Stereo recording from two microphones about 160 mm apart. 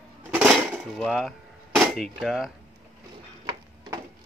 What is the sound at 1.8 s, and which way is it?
Speech, centre (ahead or behind).